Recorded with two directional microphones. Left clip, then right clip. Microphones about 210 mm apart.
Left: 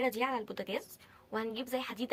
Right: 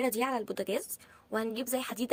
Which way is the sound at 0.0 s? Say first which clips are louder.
Right 2 dB; 40° right (ahead or behind).